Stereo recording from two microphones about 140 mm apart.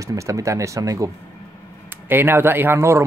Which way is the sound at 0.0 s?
25° right (ahead or behind).